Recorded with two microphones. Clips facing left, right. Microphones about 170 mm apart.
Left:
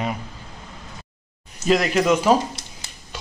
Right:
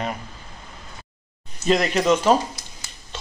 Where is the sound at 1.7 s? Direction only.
5° left (ahead or behind).